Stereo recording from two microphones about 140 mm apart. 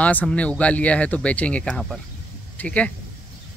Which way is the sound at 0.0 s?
10° left (ahead or behind).